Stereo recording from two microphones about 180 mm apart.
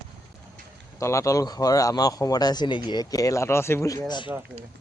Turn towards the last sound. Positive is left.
turn(degrees=25)  # may be behind; listen again after turning